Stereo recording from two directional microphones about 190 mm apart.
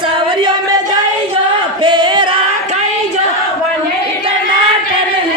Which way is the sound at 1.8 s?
25° right (ahead or behind).